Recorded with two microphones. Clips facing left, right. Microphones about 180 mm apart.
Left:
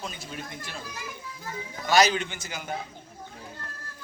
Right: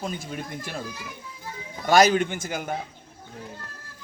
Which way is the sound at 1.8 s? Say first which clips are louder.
Right 4 dB; 50° right (ahead or behind).